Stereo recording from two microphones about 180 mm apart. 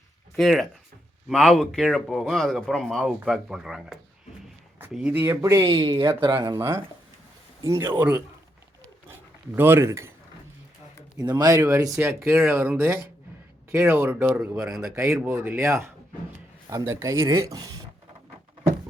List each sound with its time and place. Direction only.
0.3 s speech: centre (ahead or behind)
9.6 s speech: 10° right (ahead or behind)
11.3 s speech: 20° right (ahead or behind)